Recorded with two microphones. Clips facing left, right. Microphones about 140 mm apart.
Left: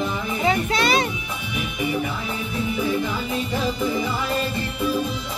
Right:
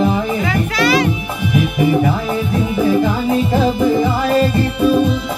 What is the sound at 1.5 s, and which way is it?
Music, 70° right (ahead or behind).